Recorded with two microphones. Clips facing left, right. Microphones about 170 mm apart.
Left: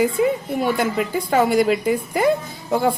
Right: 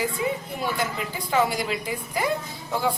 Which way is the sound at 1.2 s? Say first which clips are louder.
Left 7 dB; 55° left (ahead or behind).